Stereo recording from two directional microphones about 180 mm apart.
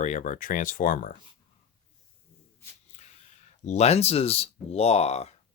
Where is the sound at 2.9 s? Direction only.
40° left (ahead or behind).